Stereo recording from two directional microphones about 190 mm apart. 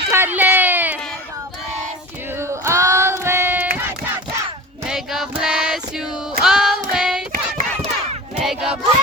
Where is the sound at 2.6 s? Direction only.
15° right (ahead or behind).